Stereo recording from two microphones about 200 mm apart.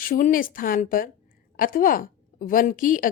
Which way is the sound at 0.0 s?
45° left (ahead or behind).